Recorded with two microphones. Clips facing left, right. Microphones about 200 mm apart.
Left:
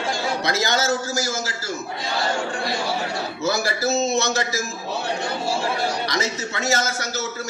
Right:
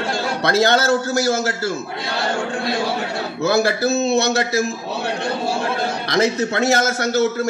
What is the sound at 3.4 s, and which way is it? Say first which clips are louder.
A man's voice: right 6 dB; 60° right (ahead or behind).